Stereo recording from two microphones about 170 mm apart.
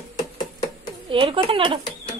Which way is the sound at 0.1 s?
25° left (ahead or behind).